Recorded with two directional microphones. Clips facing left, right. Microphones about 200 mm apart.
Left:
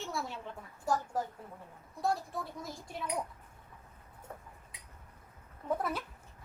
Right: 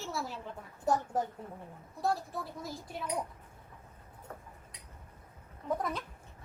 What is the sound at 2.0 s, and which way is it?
A child's voice, centre (ahead or behind).